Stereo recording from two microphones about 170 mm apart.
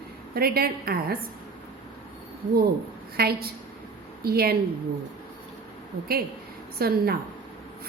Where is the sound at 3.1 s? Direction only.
65° right (ahead or behind).